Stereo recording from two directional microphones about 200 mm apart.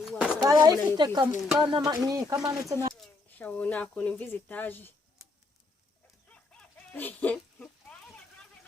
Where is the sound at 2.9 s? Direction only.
5° left (ahead or behind).